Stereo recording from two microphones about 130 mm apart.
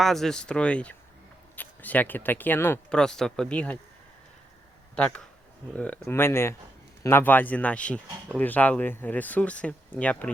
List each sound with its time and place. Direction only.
0.0 s speech: centre (ahead or behind)
2.9 s speech: 5° left (ahead or behind)
4.9 s speech: 10° left (ahead or behind)